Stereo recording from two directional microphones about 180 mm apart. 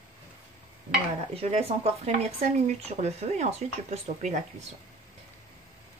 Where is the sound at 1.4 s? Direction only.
35° right (ahead or behind).